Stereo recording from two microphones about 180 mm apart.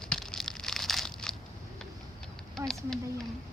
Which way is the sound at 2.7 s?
Centre (ahead or behind).